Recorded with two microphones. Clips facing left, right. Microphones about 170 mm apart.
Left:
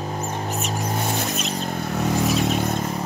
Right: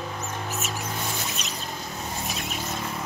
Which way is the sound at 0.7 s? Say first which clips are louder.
Left 6 dB; 40° left (ahead or behind).